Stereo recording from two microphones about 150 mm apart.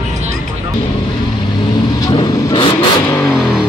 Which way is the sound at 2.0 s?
30° left (ahead or behind).